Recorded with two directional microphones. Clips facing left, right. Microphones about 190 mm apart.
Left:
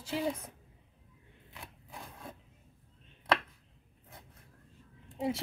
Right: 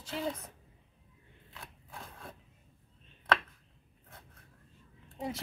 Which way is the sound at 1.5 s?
15° left (ahead or behind).